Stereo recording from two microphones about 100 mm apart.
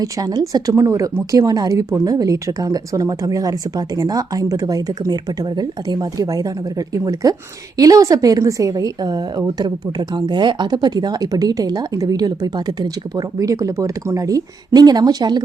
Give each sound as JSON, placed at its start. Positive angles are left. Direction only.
{"t": 0.0, "sound": "a woman's voice", "side_deg": -40}